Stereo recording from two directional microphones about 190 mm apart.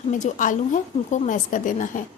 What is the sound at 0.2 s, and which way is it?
A woman's voice, 40° left (ahead or behind).